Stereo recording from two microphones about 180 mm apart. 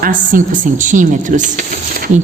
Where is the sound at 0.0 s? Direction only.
50° right (ahead or behind).